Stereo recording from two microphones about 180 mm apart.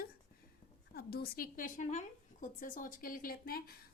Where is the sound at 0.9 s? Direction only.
60° left (ahead or behind).